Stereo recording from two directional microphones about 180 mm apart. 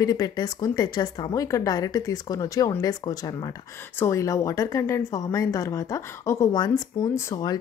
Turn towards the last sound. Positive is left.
turn(degrees=20)  # may be behind; listen again after turning